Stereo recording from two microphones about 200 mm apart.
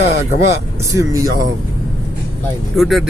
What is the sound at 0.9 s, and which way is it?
Speech, 15° right (ahead or behind).